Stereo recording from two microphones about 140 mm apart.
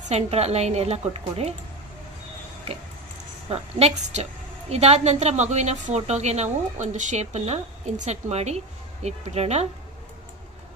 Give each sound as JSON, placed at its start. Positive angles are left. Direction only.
{"t": 0.1, "sound": "a woman's voice", "side_deg": -50}
{"t": 3.5, "sound": "a woman's voice", "side_deg": -50}